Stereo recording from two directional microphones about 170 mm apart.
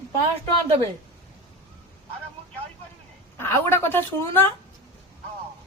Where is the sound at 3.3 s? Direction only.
15° left (ahead or behind).